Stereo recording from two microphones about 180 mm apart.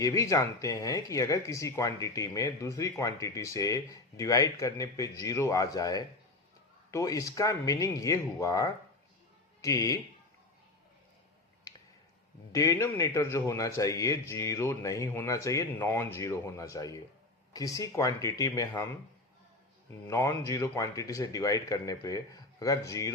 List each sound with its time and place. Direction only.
0.0 s a man's voice: 20° left (ahead or behind)
11.7 s a sound: 20° left (ahead or behind)
12.5 s a man's voice: 20° left (ahead or behind)
20.1 s speech: 15° left (ahead or behind)